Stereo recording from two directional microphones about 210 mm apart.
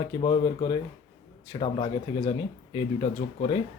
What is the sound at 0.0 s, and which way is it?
Speech, 20° left (ahead or behind).